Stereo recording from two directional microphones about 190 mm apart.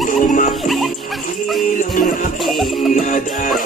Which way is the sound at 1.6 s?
45° left (ahead or behind).